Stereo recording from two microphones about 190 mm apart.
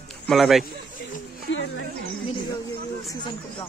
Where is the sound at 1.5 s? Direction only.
80° left.